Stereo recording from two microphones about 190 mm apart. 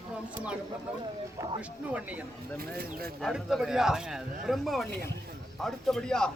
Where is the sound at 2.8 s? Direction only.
50° right (ahead or behind).